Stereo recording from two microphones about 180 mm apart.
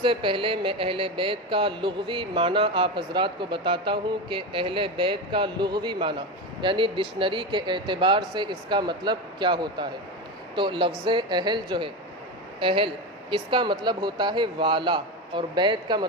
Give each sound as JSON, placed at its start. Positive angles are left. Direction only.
{"t": 0.0, "sound": "speech", "side_deg": -25}